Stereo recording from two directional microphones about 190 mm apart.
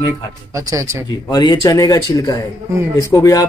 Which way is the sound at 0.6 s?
15° right (ahead or behind).